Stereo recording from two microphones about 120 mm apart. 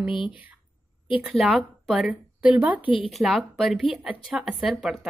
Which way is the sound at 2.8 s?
50° left (ahead or behind).